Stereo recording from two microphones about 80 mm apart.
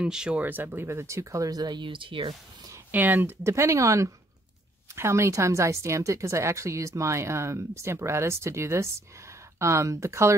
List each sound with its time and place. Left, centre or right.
0.0 s speech: centre
0.4 s a woman's voice: right
2.9 s a woman's voice: right